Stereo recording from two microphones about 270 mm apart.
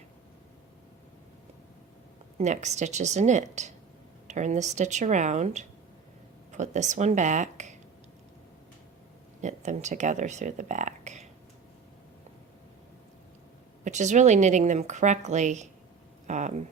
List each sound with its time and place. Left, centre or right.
2.4 s speech: right
9.4 s speech: right
13.8 s speech: right
16.2 s a sound: right